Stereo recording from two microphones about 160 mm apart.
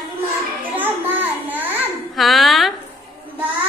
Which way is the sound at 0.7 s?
10° right (ahead or behind).